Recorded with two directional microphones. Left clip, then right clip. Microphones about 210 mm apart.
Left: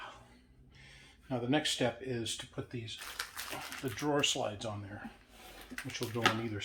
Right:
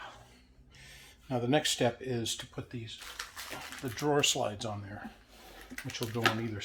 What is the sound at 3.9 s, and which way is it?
Speech, 45° right (ahead or behind).